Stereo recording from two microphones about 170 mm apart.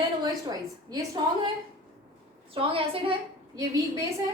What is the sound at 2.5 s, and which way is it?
Speech, 30° right (ahead or behind).